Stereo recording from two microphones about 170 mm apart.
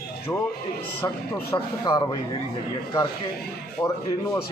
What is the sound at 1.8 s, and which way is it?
Speech, 25° left (ahead or behind).